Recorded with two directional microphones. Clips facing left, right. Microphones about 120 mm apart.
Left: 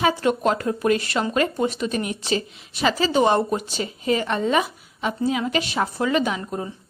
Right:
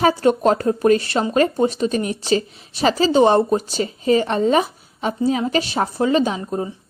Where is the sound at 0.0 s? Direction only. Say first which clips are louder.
Right 4 dB; 35° right (ahead or behind).